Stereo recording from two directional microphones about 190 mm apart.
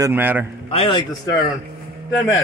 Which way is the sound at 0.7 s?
30° left (ahead or behind).